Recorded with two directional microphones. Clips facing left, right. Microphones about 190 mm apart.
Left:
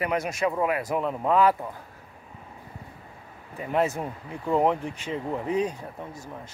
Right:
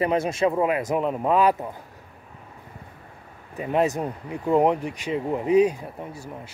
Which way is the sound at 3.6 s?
20° right (ahead or behind).